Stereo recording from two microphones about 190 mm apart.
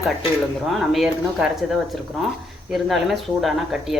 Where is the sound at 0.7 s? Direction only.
Centre (ahead or behind).